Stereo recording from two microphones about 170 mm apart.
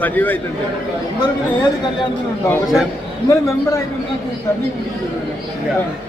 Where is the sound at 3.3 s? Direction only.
20° left (ahead or behind).